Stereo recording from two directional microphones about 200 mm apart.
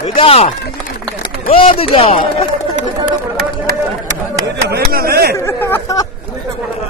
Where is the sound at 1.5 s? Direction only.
30° left (ahead or behind).